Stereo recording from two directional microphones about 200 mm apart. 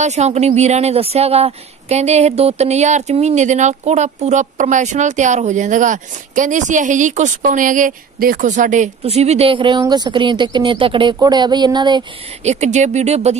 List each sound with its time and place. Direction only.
0.0 s speech: 35° right (ahead or behind)
12.4 s speech: 35° right (ahead or behind)